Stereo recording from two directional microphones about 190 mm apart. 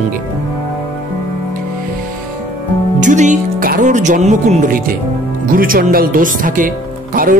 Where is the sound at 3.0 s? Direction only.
40° right (ahead or behind).